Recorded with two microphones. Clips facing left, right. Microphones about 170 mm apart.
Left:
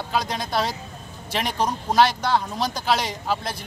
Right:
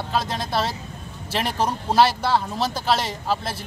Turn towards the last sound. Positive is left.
turn(degrees=0)  # may be behind; listen again after turning